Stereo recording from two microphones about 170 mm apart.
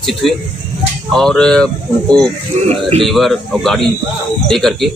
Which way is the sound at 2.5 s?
40° right (ahead or behind).